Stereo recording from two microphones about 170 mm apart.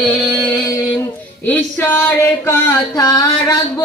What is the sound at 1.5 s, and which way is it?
Speech, 10° left (ahead or behind).